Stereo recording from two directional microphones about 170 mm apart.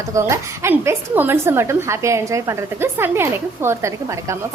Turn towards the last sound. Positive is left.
turn(degrees=-15)  # may be behind; listen again after turning